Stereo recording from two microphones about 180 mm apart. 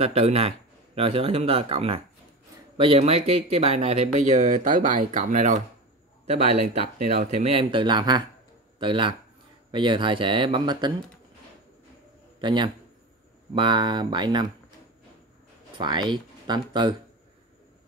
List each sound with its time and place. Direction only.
0.0 s speech: 35° right (ahead or behind)
12.4 s speech: 25° right (ahead or behind)
15.8 s speech: 25° right (ahead or behind)